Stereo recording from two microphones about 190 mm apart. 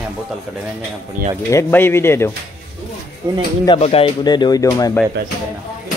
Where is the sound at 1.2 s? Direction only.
50° right (ahead or behind).